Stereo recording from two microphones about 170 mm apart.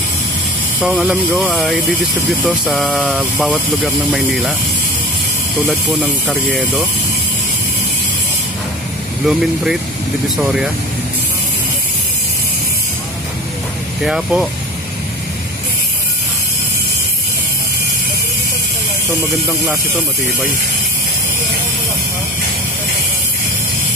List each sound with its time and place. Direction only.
0.7 s speech: 10° right (ahead or behind)
6.2 s speech: centre (ahead or behind)
9.2 s speech: 5° right (ahead or behind)
14.0 s speech: 5° right (ahead or behind)